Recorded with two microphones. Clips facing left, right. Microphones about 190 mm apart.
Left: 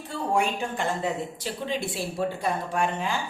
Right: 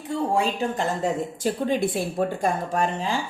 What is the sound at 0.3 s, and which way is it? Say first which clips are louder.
Speech: left 1 dB; 35° right (ahead or behind).